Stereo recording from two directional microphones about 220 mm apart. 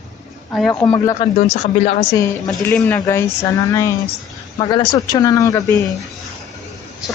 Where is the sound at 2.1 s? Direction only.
15° left (ahead or behind).